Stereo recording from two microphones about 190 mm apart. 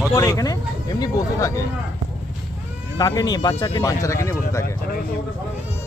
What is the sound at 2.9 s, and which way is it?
Speech, 20° left (ahead or behind).